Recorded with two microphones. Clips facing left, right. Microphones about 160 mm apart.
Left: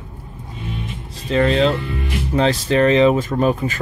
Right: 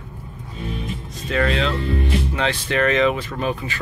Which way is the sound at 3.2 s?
45° left (ahead or behind).